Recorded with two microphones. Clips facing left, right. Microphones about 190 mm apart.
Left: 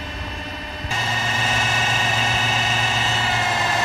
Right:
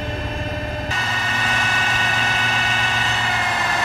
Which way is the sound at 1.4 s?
25° left (ahead or behind).